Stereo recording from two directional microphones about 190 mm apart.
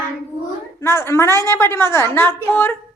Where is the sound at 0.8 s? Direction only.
15° left (ahead or behind).